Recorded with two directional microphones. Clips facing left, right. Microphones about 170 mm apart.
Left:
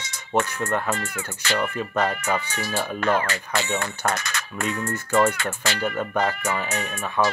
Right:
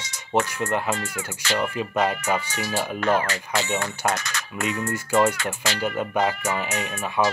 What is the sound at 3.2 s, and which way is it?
Speech, 55° left (ahead or behind).